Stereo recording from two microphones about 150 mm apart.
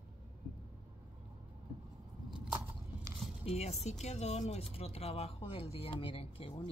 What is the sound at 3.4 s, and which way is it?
Speech, 45° left (ahead or behind).